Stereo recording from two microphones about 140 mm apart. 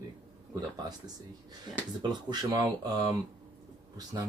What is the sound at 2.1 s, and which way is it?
Speech, 30° right (ahead or behind).